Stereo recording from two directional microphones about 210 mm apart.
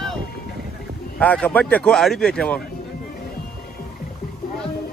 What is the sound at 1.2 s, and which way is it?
Speech, 5° left (ahead or behind).